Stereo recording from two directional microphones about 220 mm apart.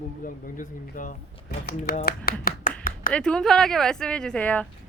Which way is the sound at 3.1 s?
5° left (ahead or behind).